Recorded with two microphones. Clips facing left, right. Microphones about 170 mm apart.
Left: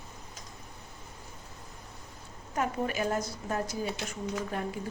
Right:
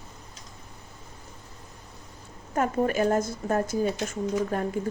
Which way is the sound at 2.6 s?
45° right (ahead or behind).